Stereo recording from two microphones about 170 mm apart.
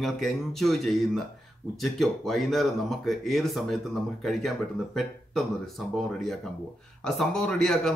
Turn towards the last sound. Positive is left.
turn(degrees=5)  # may be behind; listen again after turning